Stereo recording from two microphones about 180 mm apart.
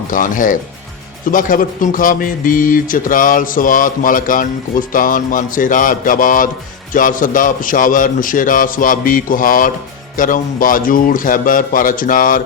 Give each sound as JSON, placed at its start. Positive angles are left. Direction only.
{"t": 0.1, "sound": "a man's voice", "side_deg": 50}